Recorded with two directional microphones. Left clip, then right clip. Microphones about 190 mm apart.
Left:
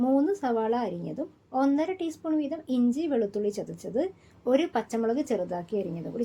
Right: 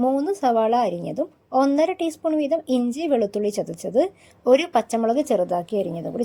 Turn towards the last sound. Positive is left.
turn(degrees=-45)  # may be behind; listen again after turning